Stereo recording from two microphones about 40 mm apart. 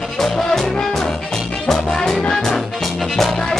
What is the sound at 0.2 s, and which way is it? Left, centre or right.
Music, centre.